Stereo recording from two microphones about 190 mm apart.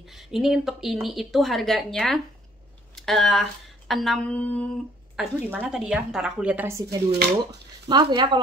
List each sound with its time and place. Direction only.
0.1 s speech: centre (ahead or behind)
5.1 s speech: 5° right (ahead or behind)
7.9 s speech: 25° right (ahead or behind)